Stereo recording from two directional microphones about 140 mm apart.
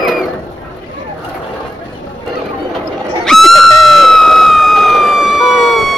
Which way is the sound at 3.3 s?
Centre (ahead or behind).